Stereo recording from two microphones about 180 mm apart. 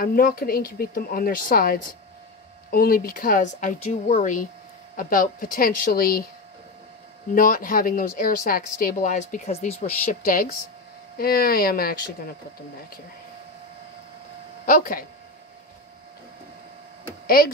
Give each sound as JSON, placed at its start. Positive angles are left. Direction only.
{"t": 0.0, "sound": "speech", "side_deg": 55}
{"t": 7.3, "sound": "speech", "side_deg": 50}
{"t": 10.2, "sound": "speech", "side_deg": 50}
{"t": 14.7, "sound": "speech", "side_deg": 50}